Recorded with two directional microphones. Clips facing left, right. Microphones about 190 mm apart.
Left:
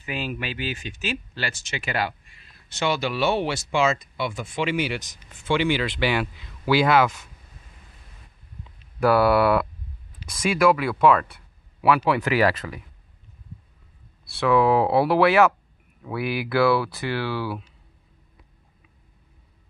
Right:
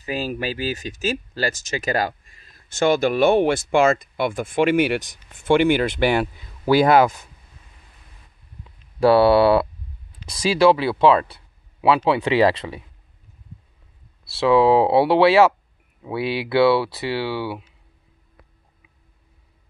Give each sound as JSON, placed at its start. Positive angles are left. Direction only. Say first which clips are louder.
{"t": 0.0, "sound": "speech", "louder": "right 5 dB", "side_deg": -35}
{"t": 9.0, "sound": "speech", "louder": "right 4 dB", "side_deg": -30}
{"t": 14.4, "sound": "speech", "louder": "right 4 dB", "side_deg": -25}